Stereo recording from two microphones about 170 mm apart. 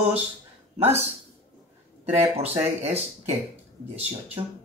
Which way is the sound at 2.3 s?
35° right (ahead or behind).